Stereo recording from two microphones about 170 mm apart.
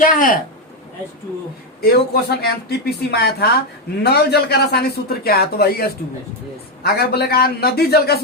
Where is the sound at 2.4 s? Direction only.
70° left (ahead or behind).